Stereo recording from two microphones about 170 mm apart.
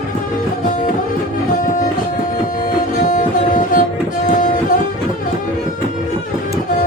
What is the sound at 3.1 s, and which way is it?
Music, 50° left (ahead or behind).